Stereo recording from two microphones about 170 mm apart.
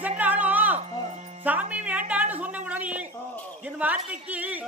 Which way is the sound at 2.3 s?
10° right (ahead or behind).